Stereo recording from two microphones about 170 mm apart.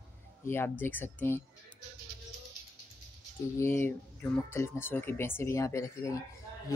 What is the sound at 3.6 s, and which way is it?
Speech, 15° left (ahead or behind).